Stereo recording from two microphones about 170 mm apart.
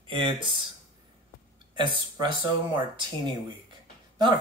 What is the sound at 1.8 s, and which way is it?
Speech, 25° right (ahead or behind).